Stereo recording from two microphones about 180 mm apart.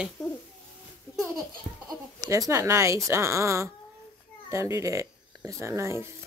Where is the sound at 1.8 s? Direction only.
20° right (ahead or behind).